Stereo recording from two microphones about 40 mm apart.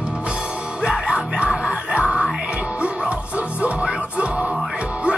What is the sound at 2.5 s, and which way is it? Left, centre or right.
Music, right.